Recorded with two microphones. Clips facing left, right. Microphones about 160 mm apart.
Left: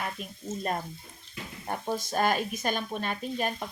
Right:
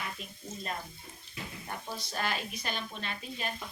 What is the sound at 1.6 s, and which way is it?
Speech, 45° left (ahead or behind).